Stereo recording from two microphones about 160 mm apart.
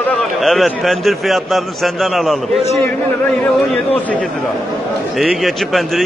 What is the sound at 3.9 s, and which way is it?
A man's voice, 10° left (ahead or behind).